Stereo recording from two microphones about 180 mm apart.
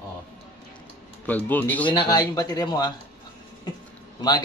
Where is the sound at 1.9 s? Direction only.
25° left (ahead or behind).